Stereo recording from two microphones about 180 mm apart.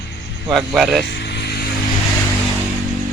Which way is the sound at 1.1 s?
70° left (ahead or behind).